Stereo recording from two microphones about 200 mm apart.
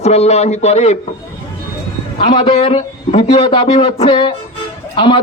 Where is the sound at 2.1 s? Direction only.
30° left (ahead or behind).